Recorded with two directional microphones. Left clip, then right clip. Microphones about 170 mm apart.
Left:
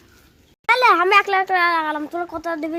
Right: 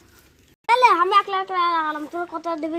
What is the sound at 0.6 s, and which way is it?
A child's voice, 20° left (ahead or behind).